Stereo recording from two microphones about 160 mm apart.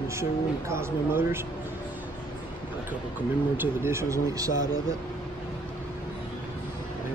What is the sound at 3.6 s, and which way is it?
Speech, 15° right (ahead or behind).